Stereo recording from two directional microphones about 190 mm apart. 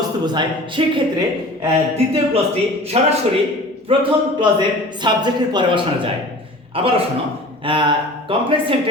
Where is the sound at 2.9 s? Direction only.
35° right (ahead or behind).